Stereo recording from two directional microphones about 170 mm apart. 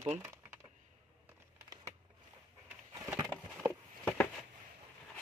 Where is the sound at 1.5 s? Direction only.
15° right (ahead or behind).